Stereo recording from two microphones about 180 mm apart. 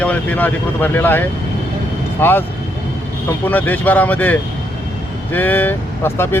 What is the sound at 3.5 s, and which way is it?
Speech, 10° left (ahead or behind).